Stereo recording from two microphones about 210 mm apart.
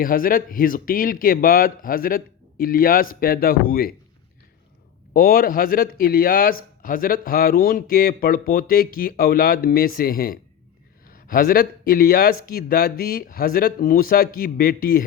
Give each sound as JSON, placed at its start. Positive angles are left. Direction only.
{"t": 0.0, "sound": "a man's voice", "side_deg": 40}
{"t": 5.1, "sound": "a man's voice", "side_deg": 45}